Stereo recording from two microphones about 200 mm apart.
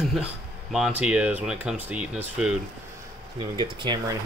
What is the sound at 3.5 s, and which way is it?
Speech, 25° right (ahead or behind).